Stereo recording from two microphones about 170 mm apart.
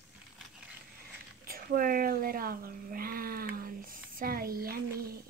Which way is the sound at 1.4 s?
60° right (ahead or behind).